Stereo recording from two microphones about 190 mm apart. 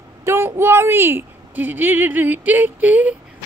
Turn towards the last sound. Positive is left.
turn(degrees=-10)  # may be behind; listen again after turning